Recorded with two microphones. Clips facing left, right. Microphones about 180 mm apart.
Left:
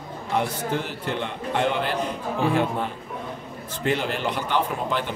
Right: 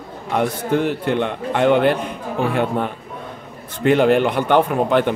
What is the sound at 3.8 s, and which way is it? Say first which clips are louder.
A man's voice: right 11 dB; 60° right (ahead or behind).